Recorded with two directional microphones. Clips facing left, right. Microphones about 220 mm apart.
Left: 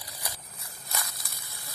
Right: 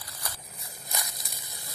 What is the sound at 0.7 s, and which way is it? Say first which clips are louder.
Snake: even; 15° right (ahead or behind).